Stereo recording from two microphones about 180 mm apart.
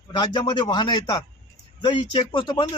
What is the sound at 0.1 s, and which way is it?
Speech, 25° left (ahead or behind).